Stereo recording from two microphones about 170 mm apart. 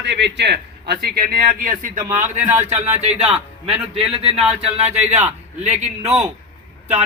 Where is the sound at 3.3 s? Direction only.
5° right (ahead or behind).